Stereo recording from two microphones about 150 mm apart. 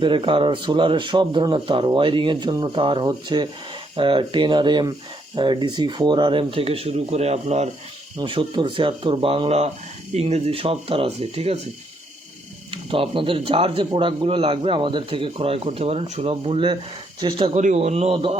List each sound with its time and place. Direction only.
0.0 s a man's voice: 35° right (ahead or behind)
8.2 s a man's voice: 30° right (ahead or behind)
12.7 s a man's voice: 35° right (ahead or behind)
17.6 s a man's voice: 50° right (ahead or behind)